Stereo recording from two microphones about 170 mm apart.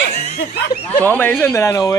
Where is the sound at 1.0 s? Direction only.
10° left (ahead or behind).